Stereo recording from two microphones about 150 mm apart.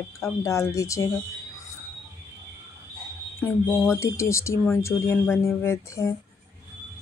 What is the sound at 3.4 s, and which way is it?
A woman's voice, 15° left (ahead or behind).